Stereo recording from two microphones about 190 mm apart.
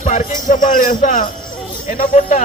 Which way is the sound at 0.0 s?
45° left (ahead or behind).